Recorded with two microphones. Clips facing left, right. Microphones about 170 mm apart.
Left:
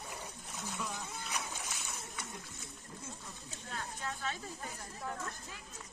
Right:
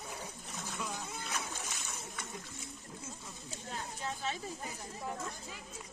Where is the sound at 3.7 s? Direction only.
20° right (ahead or behind).